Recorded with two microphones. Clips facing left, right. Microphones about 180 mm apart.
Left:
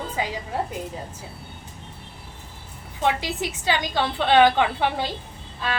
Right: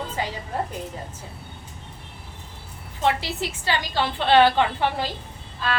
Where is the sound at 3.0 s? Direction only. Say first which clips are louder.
Even; 15° left (ahead or behind).